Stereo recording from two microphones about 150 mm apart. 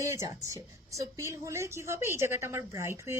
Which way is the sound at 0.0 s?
20° right (ahead or behind).